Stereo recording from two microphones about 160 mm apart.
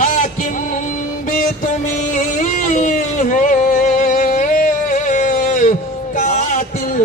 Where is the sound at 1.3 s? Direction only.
55° left (ahead or behind).